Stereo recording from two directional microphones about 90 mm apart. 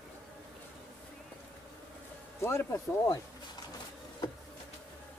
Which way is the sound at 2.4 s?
30° left (ahead or behind).